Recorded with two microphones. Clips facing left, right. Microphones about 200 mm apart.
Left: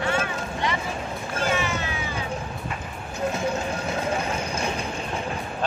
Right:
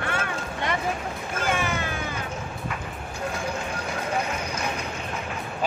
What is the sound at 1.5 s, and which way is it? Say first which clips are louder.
Vehicle: even; 50° right (ahead or behind).